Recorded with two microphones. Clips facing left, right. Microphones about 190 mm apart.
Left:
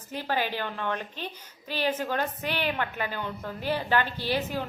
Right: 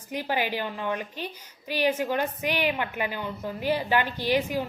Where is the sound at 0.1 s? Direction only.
15° right (ahead or behind).